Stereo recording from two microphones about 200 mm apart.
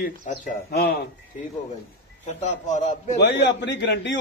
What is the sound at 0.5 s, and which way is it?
Speech, 50° left (ahead or behind).